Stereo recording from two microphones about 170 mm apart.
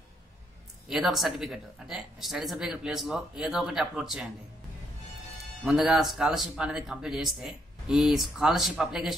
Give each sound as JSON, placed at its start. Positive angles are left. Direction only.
{"t": 0.8, "sound": "speech", "side_deg": 0}
{"t": 5.7, "sound": "speech", "side_deg": 0}